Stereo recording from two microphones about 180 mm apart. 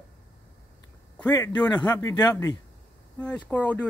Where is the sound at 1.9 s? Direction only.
15° left (ahead or behind).